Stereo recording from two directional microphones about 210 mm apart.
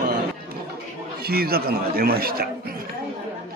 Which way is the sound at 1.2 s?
45° right (ahead or behind).